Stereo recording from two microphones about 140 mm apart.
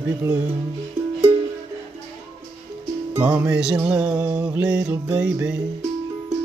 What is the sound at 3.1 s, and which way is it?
Music, 10° right (ahead or behind).